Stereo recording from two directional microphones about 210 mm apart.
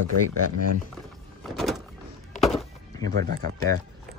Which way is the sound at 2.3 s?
Centre (ahead or behind).